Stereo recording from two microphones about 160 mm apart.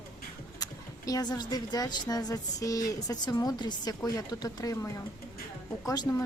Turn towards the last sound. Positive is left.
turn(degrees=25)  # may be behind; listen again after turning